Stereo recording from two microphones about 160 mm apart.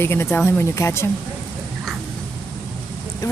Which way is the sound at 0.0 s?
15° left (ahead or behind).